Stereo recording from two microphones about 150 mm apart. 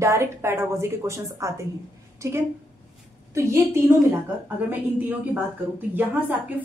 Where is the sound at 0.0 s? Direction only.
20° right (ahead or behind).